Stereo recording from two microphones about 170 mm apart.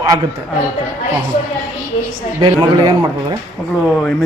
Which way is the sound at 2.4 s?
25° right (ahead or behind).